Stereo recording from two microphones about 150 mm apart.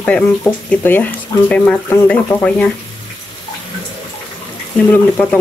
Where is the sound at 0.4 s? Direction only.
15° left (ahead or behind).